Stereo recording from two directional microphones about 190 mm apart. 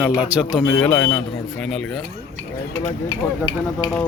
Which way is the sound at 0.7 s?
10° left (ahead or behind).